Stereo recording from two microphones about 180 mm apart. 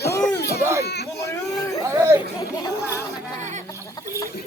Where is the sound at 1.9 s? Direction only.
15° right (ahead or behind).